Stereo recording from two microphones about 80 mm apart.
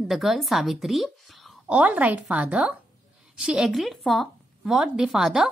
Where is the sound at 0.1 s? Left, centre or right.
Centre.